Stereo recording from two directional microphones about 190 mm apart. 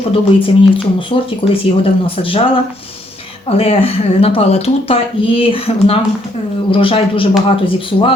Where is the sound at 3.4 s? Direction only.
30° left (ahead or behind).